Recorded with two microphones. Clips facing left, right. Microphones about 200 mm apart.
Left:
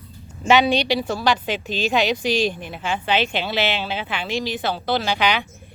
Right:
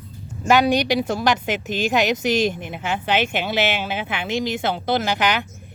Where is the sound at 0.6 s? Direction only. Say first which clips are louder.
Right 1 dB; 15° right (ahead or behind).